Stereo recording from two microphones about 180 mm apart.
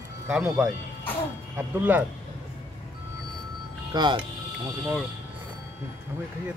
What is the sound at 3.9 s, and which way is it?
Speech, 25° right (ahead or behind).